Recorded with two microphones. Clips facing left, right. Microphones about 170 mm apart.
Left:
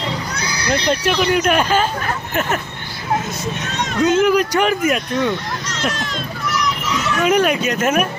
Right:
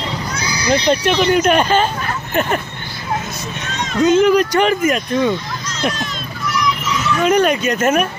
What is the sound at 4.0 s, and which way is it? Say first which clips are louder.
Speech: right 3 dB; 10° left (ahead or behind).